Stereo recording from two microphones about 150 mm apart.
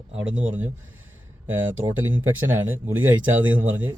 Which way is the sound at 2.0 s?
15° right (ahead or behind).